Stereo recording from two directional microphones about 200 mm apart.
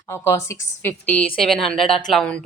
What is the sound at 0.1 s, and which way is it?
A woman's voice, 15° left (ahead or behind).